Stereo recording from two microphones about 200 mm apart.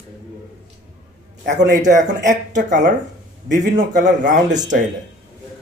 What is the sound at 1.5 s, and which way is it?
Speech, 40° right (ahead or behind).